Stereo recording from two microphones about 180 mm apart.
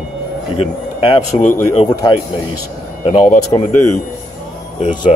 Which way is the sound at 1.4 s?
45° left (ahead or behind).